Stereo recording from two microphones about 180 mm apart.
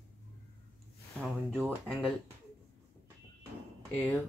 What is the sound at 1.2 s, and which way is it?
Speech, 5° left (ahead or behind).